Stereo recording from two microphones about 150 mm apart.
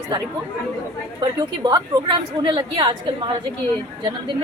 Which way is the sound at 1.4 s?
30° right (ahead or behind).